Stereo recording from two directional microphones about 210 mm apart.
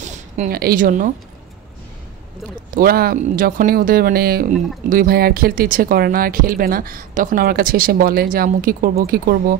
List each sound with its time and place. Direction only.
0.0 s a woman's voice: 35° right (ahead or behind)
2.7 s speech: 45° right (ahead or behind)